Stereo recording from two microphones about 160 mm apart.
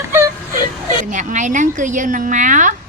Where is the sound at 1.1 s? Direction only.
50° right (ahead or behind).